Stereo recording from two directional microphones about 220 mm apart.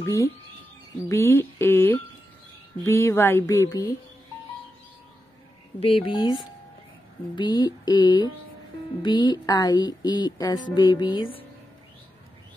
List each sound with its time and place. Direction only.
0.0 s speech: 15° left (ahead or behind)
5.8 s speech: 25° left (ahead or behind)
7.3 s speech: 20° left (ahead or behind)